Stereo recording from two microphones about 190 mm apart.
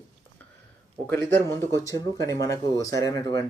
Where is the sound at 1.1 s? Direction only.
10° left (ahead or behind).